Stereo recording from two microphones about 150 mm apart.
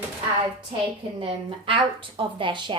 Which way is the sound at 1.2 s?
35° right (ahead or behind).